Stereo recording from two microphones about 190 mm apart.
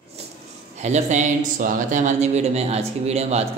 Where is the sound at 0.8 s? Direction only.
40° right (ahead or behind).